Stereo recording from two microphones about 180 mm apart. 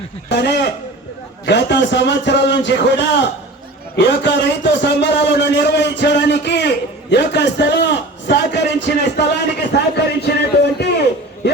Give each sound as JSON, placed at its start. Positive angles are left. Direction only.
{"t": 0.3, "sound": "a man's voice", "side_deg": 70}